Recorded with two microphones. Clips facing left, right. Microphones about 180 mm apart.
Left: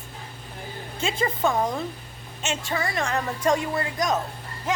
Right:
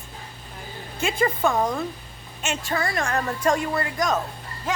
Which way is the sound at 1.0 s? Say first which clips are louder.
Right 2 dB; 25° left (ahead or behind).